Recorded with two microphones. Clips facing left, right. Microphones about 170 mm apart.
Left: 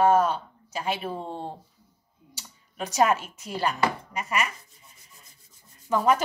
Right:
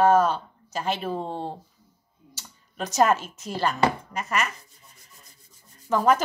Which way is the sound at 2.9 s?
40° right (ahead or behind).